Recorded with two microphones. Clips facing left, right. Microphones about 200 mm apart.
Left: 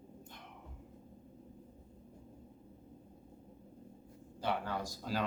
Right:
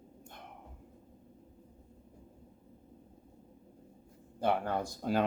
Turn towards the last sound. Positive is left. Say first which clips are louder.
# right 6 dB
turn(degrees=-55)  # may be behind; listen again after turning